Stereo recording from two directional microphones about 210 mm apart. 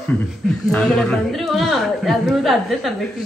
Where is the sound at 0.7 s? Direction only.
Centre (ahead or behind).